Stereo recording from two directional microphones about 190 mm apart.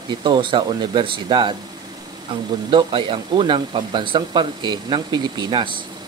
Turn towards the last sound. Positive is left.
turn(degrees=-25)  # may be behind; listen again after turning